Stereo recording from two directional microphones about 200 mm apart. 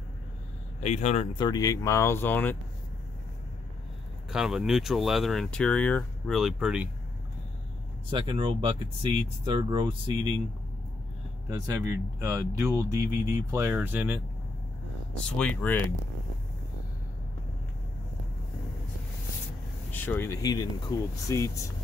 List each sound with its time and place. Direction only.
0.7 s speech: 35° left (ahead or behind); by 2.5 s 10° left (ahead or behind)
4.3 s speech: 5° right (ahead or behind)
8.1 s speech: 25° right (ahead or behind)
11.4 s speech: 15° right (ahead or behind)
15.2 s speech: 5° left (ahead or behind)
19.9 s speech: 10° left (ahead or behind)